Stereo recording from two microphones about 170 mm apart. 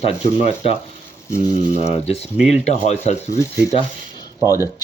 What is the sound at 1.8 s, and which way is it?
Speech, 35° left (ahead or behind).